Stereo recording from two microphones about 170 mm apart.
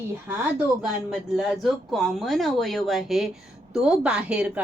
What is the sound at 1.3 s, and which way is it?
A woman's voice, centre (ahead or behind).